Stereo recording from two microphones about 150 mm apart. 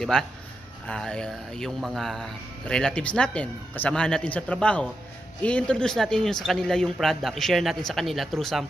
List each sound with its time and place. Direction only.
0.1 s speech: 5° left (ahead or behind)